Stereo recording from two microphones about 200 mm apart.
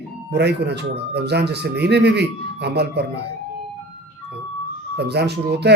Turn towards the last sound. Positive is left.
turn(degrees=-55)  # may be behind; listen again after turning